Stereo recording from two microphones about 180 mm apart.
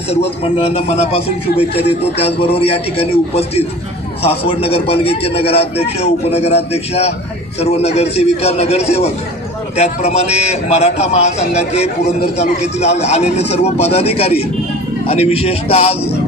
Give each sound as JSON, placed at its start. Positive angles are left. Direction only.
{"t": 0.4, "sound": "a man's voice", "side_deg": 30}